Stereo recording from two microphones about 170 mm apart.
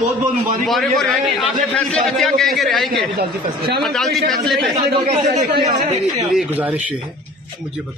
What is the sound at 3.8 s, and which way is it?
Speech, centre (ahead or behind).